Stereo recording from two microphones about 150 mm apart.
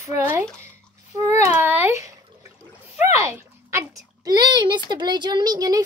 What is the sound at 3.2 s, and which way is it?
A child's voice, 20° right (ahead or behind).